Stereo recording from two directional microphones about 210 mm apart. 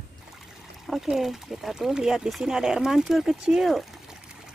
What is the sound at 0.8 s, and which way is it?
Speech, centre (ahead or behind).